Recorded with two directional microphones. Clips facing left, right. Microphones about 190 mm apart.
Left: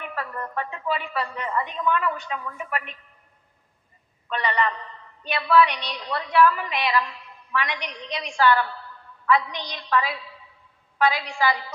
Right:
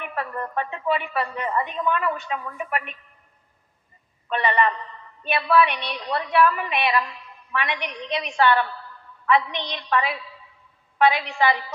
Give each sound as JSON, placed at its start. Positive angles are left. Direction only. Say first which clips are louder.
{"t": 0.0, "sound": "a woman's voice", "louder": "right 2 dB", "side_deg": -20}
{"t": 4.3, "sound": "a woman's voice", "louder": "right 3 dB", "side_deg": -25}
{"t": 5.7, "sound": "a woman's voice", "louder": "right 3 dB", "side_deg": -60}
{"t": 6.1, "sound": "a woman's voice", "louder": "even", "side_deg": -25}